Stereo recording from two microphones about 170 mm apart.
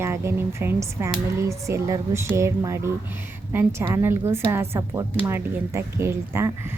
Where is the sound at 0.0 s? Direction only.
15° right (ahead or behind).